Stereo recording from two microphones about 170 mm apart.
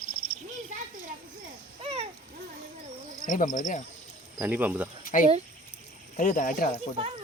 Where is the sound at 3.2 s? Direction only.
50° left (ahead or behind).